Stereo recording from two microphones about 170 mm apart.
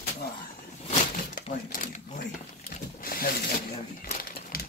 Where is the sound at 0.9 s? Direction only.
50° left (ahead or behind).